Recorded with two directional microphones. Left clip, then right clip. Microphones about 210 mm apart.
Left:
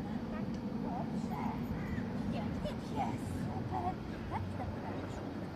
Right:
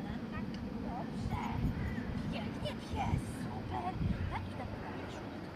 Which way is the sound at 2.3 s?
5° left (ahead or behind).